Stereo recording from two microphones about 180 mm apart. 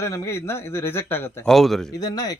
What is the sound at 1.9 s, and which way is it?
Speech, 20° left (ahead or behind).